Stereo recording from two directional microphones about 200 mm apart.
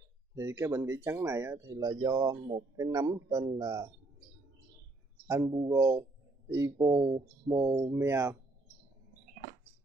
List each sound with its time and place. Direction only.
0.3 s speech: 15° right (ahead or behind)
5.2 s speech: 15° right (ahead or behind)